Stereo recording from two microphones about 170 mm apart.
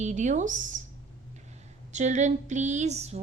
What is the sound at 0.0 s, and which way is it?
Speech, 45° right (ahead or behind).